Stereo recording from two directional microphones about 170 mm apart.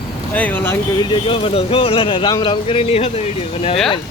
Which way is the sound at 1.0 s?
30° left (ahead or behind).